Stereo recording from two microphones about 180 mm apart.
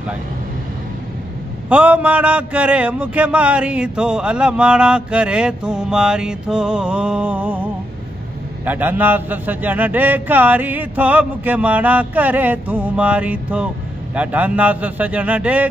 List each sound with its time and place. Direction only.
1.7 s a man's voice: 5° right (ahead or behind)